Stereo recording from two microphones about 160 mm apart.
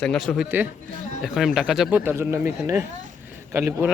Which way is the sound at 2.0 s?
15° right (ahead or behind).